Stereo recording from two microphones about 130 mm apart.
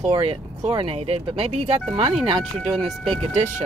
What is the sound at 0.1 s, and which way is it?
Speech, 45° right (ahead or behind).